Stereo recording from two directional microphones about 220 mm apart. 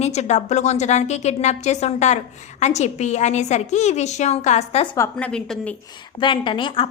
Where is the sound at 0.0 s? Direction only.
30° left (ahead or behind).